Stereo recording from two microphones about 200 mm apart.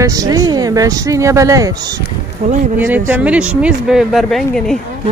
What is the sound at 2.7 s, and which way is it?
Speech, 10° right (ahead or behind).